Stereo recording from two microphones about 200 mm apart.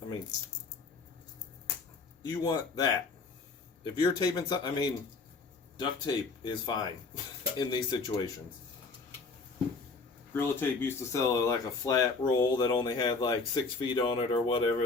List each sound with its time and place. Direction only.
2.2 s speech: 20° left (ahead or behind)
10.3 s speech: 10° left (ahead or behind)